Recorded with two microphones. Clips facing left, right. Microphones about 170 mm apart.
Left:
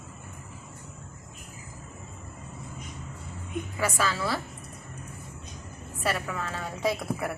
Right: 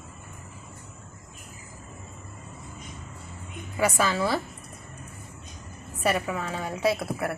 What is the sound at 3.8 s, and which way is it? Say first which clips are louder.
Speech: right 5 dB; 20° right (ahead or behind).